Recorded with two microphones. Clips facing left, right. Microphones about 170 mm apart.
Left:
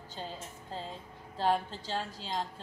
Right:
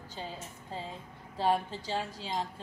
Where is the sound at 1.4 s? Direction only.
10° right (ahead or behind).